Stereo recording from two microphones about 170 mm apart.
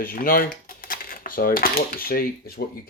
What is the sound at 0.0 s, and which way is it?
Speech, 55° left (ahead or behind).